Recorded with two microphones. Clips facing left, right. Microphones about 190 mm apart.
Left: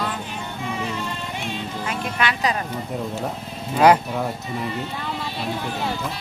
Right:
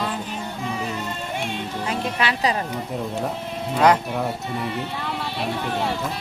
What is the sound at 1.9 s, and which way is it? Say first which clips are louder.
Speech: right 1 dB; 30° right (ahead or behind).